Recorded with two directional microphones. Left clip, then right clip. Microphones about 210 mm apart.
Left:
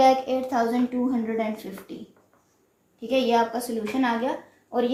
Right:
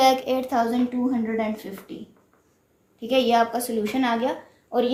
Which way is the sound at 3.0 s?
40° right (ahead or behind).